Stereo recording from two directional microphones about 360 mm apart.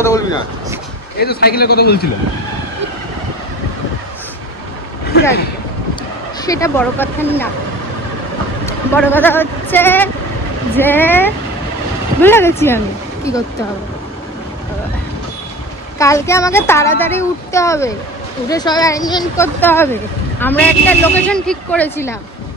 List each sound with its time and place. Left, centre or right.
0.0 s speech: centre
1.2 s a man's voice: left
6.4 s speech: centre
8.6 s speech: centre
16.0 s speech: centre